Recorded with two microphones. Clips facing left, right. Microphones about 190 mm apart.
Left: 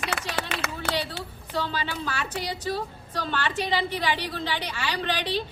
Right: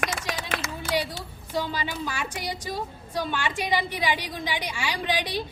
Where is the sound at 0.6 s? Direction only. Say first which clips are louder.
Left 2 dB; 65° left (ahead or behind).